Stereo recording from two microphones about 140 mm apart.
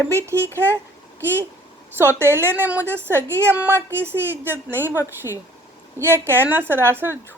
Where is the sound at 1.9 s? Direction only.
20° right (ahead or behind).